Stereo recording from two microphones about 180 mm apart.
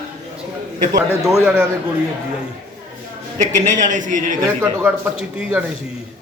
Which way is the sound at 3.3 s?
45° right (ahead or behind).